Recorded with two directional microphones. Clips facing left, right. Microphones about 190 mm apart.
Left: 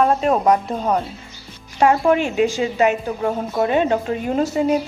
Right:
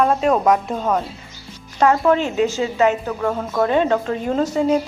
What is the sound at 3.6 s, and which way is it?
Speech, 10° left (ahead or behind).